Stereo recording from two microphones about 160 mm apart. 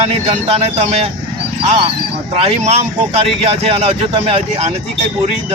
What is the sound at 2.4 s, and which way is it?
Speech, 40° right (ahead or behind).